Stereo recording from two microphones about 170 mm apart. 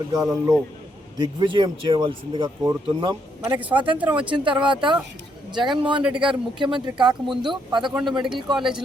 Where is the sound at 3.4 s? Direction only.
10° right (ahead or behind).